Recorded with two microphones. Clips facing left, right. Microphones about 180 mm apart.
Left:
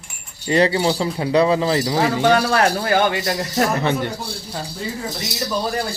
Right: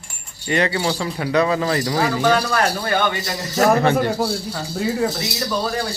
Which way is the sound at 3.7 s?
60° right (ahead or behind).